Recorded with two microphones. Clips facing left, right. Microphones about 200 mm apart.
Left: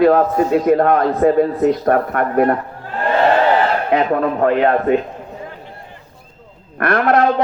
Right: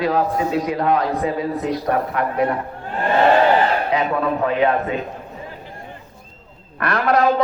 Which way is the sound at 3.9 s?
50° left (ahead or behind).